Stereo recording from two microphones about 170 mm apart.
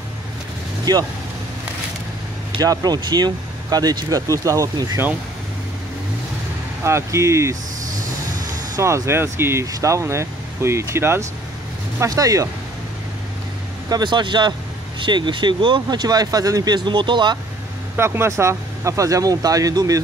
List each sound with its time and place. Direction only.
0.9 s speech: 25° right (ahead or behind)
2.6 s speech: 20° right (ahead or behind)
6.8 s speech: 15° right (ahead or behind)
8.7 s speech: 15° right (ahead or behind)
13.8 s speech: 25° right (ahead or behind)
17.9 s speech: 15° right (ahead or behind)